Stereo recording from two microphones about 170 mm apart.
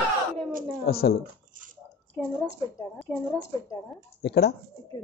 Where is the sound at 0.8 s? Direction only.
65° left (ahead or behind).